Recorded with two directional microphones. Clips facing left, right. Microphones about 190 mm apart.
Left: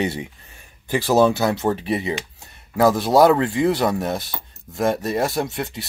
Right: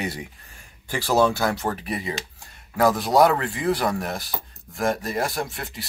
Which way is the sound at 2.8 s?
Centre (ahead or behind).